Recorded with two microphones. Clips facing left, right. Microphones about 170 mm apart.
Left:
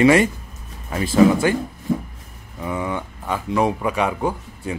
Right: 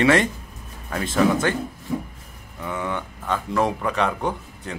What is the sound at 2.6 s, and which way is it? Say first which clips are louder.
Speech: left 3 dB; 10° left (ahead or behind).